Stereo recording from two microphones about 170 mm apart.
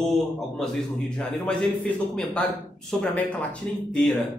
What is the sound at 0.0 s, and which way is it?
A man's voice, centre (ahead or behind).